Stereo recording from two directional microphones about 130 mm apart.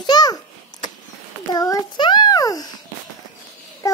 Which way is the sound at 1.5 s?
30° left (ahead or behind).